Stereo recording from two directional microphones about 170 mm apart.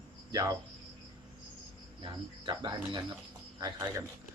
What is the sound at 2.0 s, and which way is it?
Speech, 25° right (ahead or behind).